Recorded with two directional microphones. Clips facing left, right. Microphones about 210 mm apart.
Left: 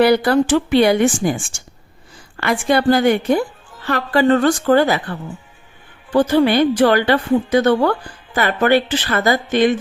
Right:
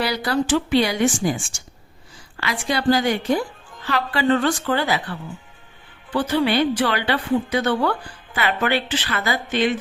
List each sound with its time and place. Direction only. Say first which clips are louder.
0.0 s a woman's voice: left 9 dB; 55° left (ahead or behind)
6.1 s a woman's voice: left 6 dB; 45° left (ahead or behind)